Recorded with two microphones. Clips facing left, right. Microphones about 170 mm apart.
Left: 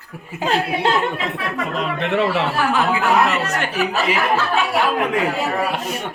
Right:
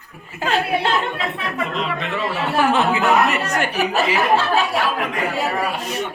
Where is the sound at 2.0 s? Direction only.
70° left (ahead or behind).